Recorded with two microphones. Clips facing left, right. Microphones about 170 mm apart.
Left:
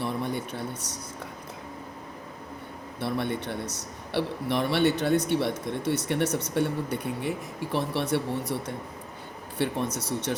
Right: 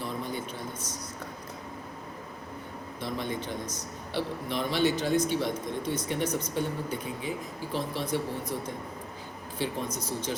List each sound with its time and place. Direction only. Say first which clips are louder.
0.0 s a sound: left 4 dB; 65° left (ahead or behind)
3.0 s a man's voice: left 4 dB; 65° left (ahead or behind)
9.6 s a man's voice: left 4 dB; 70° left (ahead or behind)